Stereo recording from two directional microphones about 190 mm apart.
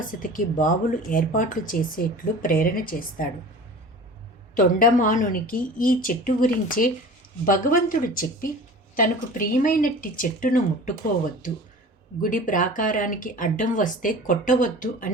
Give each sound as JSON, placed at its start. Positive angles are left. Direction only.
{"t": 0.1, "sound": "speech", "side_deg": 45}
{"t": 4.5, "sound": "speech", "side_deg": 45}
{"t": 12.2, "sound": "speech", "side_deg": 45}